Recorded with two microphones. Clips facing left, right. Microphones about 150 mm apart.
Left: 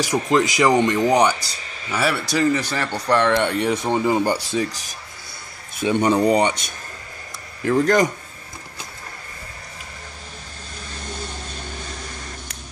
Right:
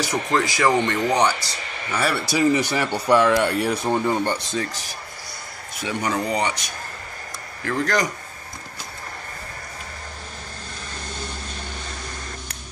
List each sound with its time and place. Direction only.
0.0 s speech: 15° left (ahead or behind)
1.6 s a sound: 65° right (ahead or behind)
1.9 s speech: 5° left (ahead or behind)
5.8 s speech: 25° left (ahead or behind)
7.6 s speech: 20° left (ahead or behind)